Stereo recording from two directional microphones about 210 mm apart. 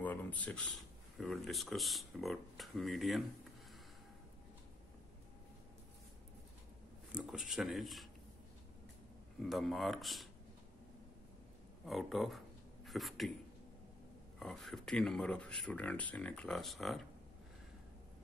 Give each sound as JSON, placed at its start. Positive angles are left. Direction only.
{"t": 0.0, "sound": "speech", "side_deg": 10}
{"t": 7.1, "sound": "speech", "side_deg": -5}
{"t": 9.4, "sound": "speech", "side_deg": 0}
{"t": 11.8, "sound": "speech", "side_deg": 0}
{"t": 14.4, "sound": "speech", "side_deg": 0}